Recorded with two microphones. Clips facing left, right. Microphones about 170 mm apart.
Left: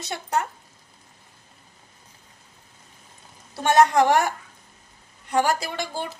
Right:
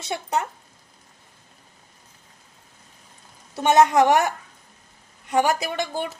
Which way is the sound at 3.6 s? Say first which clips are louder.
Right 1 dB; 20° right (ahead or behind).